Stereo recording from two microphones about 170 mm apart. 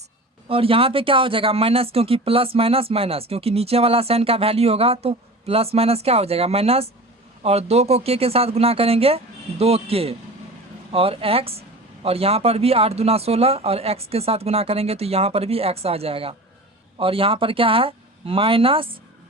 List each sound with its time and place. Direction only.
0.4 s speech: 35° right (ahead or behind)